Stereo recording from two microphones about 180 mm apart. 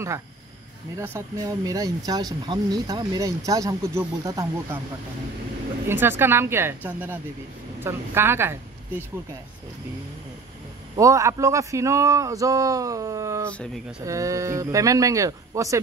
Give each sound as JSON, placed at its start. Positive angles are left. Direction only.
{"t": 0.9, "sound": "speech", "side_deg": -15}
{"t": 5.9, "sound": "speech", "side_deg": -10}
{"t": 11.0, "sound": "speech", "side_deg": -20}
{"t": 13.6, "sound": "speech", "side_deg": 0}
{"t": 14.0, "sound": "speech", "side_deg": -20}